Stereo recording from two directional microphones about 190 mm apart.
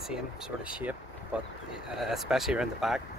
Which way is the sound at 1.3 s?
5° right (ahead or behind).